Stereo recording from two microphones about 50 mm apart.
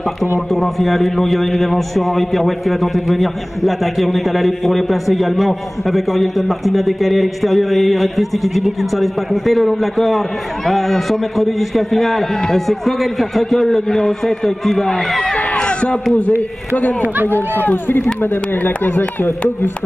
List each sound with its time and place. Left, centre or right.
0.5 s a man's voice: centre
15.3 s a sound: left
17.3 s speech: left